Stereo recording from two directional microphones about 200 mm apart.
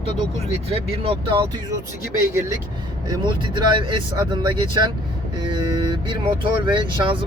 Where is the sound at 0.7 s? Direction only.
30° right (ahead or behind).